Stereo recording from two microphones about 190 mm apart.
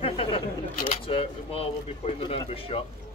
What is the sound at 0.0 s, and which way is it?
Camera, 30° left (ahead or behind).